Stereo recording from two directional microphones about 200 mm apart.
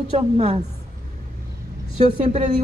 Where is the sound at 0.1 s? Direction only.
35° right (ahead or behind).